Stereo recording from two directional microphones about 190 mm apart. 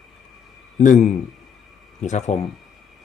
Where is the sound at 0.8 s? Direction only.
40° left (ahead or behind).